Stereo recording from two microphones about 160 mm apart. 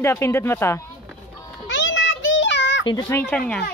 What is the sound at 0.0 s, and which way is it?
Speech, 15° left (ahead or behind).